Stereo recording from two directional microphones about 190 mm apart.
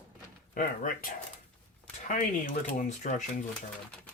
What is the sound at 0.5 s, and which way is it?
Speech, 45° left (ahead or behind).